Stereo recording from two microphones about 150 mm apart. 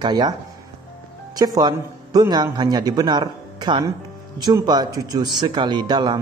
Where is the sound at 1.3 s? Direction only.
25° right (ahead or behind).